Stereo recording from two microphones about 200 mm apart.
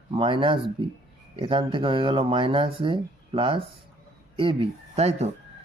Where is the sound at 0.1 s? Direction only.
25° right (ahead or behind).